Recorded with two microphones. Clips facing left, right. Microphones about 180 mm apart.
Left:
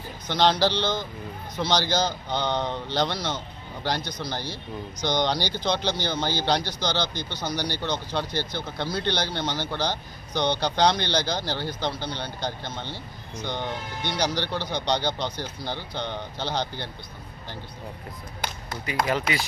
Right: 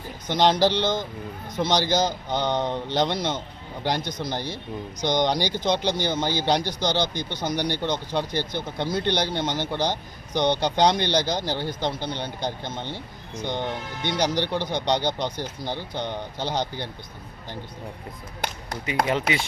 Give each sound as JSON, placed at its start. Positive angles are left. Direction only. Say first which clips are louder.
{"t": 0.3, "sound": "speech", "louder": "right 2 dB", "side_deg": -15}
{"t": 6.6, "sound": "speech", "louder": "right 3 dB", "side_deg": -45}
{"t": 7.4, "sound": "speech", "louder": "right 3 dB", "side_deg": -20}
{"t": 18.9, "sound": "speech", "louder": "right 2 dB", "side_deg": -25}